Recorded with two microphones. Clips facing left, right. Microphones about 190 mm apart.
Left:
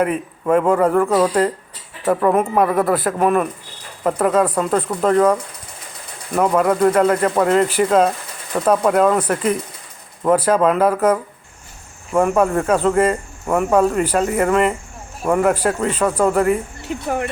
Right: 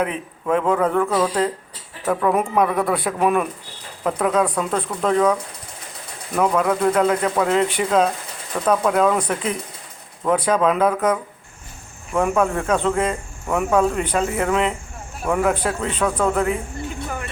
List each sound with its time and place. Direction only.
0.0 s speech: 5° left (ahead or behind)
16.9 s music: 70° left (ahead or behind)